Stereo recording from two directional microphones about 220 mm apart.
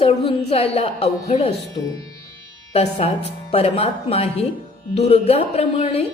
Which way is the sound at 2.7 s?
30° left (ahead or behind).